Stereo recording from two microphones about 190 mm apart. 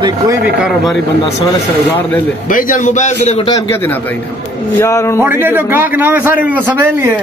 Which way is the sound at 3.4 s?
25° left (ahead or behind).